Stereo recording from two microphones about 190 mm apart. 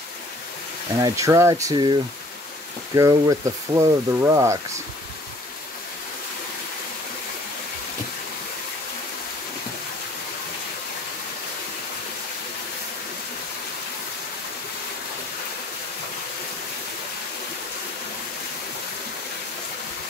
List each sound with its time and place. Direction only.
1.0 s speech: 15° right (ahead or behind)